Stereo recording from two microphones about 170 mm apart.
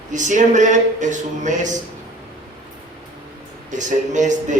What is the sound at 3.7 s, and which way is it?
Speech, 45° right (ahead or behind).